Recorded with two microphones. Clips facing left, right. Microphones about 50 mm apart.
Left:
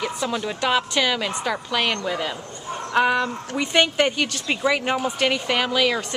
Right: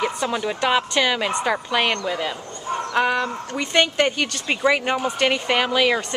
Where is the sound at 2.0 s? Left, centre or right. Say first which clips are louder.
Right 1 dB; centre.